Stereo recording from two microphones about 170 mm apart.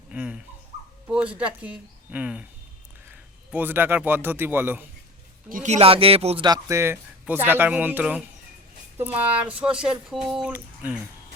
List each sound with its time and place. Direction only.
0.1 s dog: 5° right (ahead or behind)
1.0 s a woman's voice: 5° right (ahead or behind)
5.5 s speech: 50° right (ahead or behind); by 11.0 s 5° right (ahead or behind)